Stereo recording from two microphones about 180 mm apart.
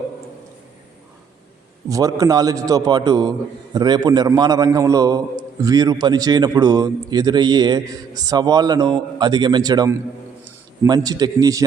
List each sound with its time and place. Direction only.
1.9 s a man's voice: 20° right (ahead or behind)